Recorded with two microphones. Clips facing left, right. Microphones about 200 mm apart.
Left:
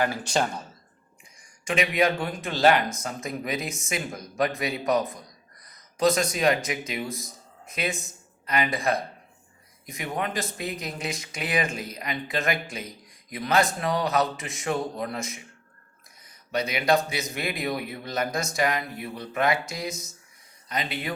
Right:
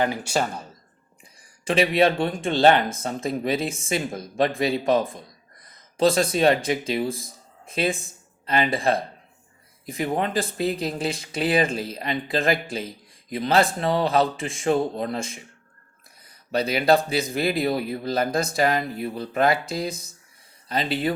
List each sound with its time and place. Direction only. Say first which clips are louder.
0.0 s speech: right 2 dB; 15° right (ahead or behind)
1.4 s speech: right 5 dB; 30° right (ahead or behind)
16.2 s a sound: right 4 dB; 30° right (ahead or behind)
17.3 s speech: right 6 dB; 30° right (ahead or behind)